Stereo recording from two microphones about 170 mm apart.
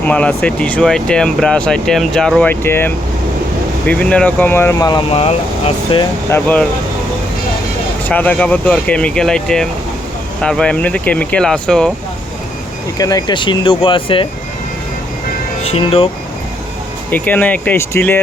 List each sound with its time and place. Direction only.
0.0 s speech: 10° left (ahead or behind)
5.1 s speech: 35° left (ahead or behind)
6.3 s speech: 10° left (ahead or behind)
8.0 s speech: 10° left (ahead or behind)
13.0 s speech: 20° left (ahead or behind)
15.6 s speech: 35° left (ahead or behind)
17.1 s speech: 10° left (ahead or behind)